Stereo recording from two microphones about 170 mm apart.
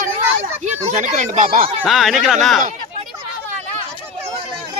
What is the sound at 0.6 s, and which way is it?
Speech, 45° right (ahead or behind).